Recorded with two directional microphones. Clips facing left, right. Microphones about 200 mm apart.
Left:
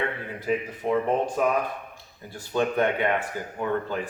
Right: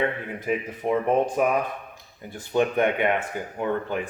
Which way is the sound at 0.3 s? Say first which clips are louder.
Even; 20° right (ahead or behind).